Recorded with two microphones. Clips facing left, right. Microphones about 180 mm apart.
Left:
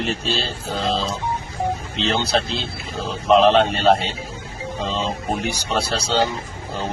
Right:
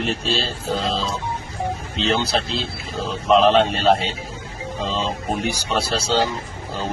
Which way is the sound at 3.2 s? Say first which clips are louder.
Left 1 dB; centre (ahead or behind).